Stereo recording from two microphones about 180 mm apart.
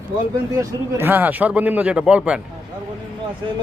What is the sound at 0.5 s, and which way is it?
Speech, 15° right (ahead or behind).